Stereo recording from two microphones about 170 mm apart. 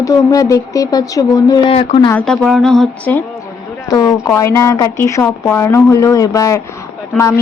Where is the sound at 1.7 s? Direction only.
35° left (ahead or behind).